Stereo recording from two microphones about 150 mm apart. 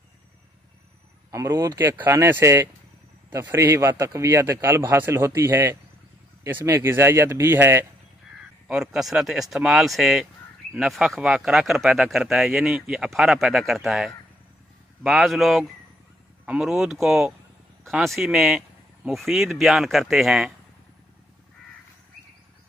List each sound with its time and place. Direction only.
1.3 s a man's voice: 20° right (ahead or behind)
8.6 s speech: 5° right (ahead or behind)